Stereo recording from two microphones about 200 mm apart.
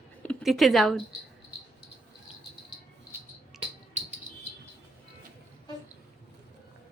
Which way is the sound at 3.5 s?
35° right (ahead or behind).